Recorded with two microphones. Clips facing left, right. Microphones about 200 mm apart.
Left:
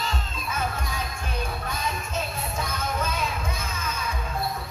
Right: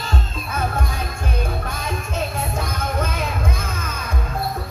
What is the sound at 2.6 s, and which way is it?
Music, 55° right (ahead or behind).